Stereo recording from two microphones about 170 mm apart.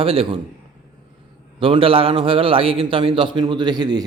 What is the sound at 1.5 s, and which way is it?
A man's voice, 30° right (ahead or behind).